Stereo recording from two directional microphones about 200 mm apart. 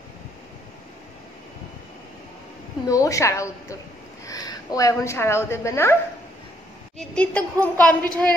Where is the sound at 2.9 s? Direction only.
15° left (ahead or behind).